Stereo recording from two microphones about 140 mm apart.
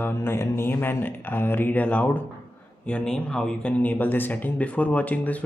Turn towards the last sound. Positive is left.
turn(degrees=10)  # may be behind; listen again after turning